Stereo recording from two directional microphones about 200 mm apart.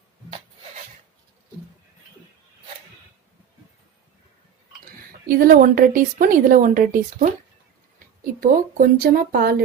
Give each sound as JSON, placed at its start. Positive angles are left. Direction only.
{"t": 5.5, "sound": "a woman's voice", "side_deg": -45}